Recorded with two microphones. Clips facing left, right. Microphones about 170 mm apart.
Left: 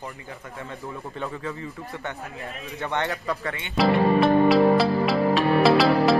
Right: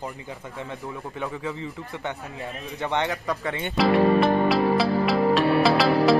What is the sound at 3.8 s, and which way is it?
Music, centre (ahead or behind).